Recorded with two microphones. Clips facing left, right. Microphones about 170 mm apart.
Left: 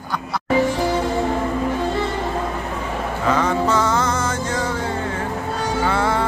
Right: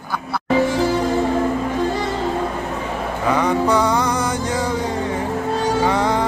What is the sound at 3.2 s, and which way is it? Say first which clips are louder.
Music: right 1 dB; 15° right (ahead or behind).